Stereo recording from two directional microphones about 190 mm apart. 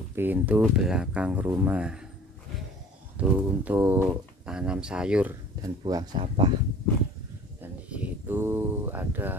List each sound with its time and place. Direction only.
0.1 s speech: 10° right (ahead or behind)
3.2 s speech: 10° right (ahead or behind)
5.9 s speech: 25° right (ahead or behind)
7.6 s a sound: 10° right (ahead or behind)